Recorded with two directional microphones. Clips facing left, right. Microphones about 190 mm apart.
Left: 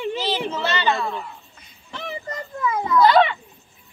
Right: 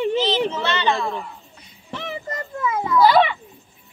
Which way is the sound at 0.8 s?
5° left (ahead or behind).